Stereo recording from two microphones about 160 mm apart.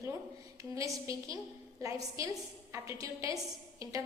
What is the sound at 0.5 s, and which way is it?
A woman's voice, 20° right (ahead or behind).